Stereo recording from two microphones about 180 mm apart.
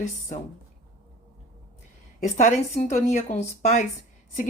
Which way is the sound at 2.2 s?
40° left (ahead or behind).